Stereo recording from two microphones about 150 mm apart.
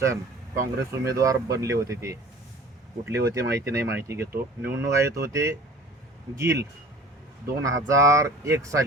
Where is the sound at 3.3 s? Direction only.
20° right (ahead or behind).